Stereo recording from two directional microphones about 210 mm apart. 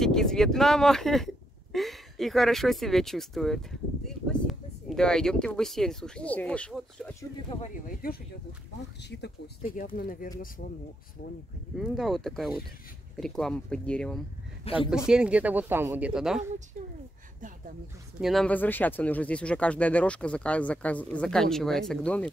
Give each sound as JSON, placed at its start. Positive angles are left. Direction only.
{"t": 0.0, "sound": "speech", "side_deg": 0}
{"t": 7.6, "sound": "speech", "side_deg": 45}
{"t": 9.6, "sound": "speech", "side_deg": 40}
{"t": 11.7, "sound": "speech", "side_deg": 0}
{"t": 14.6, "sound": "speech", "side_deg": 25}
{"t": 15.0, "sound": "speech", "side_deg": -5}
{"t": 18.2, "sound": "speech", "side_deg": 0}